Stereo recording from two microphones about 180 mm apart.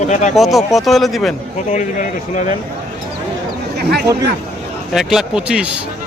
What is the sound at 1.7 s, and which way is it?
Speech, 40° left (ahead or behind).